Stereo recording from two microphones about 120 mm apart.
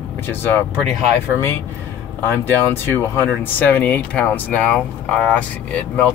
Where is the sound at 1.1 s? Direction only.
20° left (ahead or behind).